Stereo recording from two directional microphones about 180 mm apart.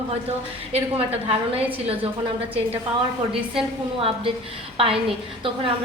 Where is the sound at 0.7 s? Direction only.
35° right (ahead or behind).